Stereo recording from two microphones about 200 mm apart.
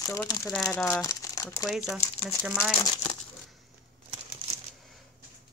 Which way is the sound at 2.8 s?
20° left (ahead or behind).